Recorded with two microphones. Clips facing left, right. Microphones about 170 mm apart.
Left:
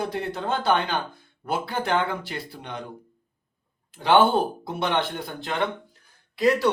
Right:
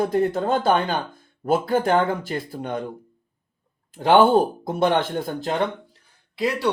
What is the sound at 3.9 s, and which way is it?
Speech, 45° right (ahead or behind).